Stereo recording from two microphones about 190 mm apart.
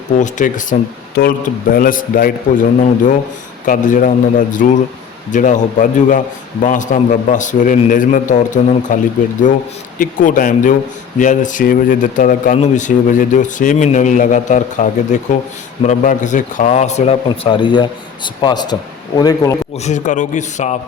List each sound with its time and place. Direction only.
0.2 s speech: 40° left (ahead or behind)
10.0 s speech: 45° left (ahead or behind)
17.2 s a man's voice: 25° left (ahead or behind)
19.7 s speech: 35° left (ahead or behind)